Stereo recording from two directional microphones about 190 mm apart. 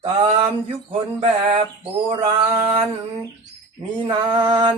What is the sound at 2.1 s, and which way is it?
Music, 30° right (ahead or behind).